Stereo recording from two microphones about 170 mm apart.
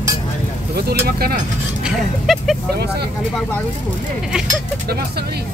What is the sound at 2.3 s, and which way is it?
Speech, centre (ahead or behind).